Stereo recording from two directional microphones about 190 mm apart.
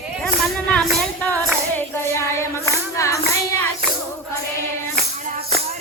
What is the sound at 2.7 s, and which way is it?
Clapping, 15° left (ahead or behind).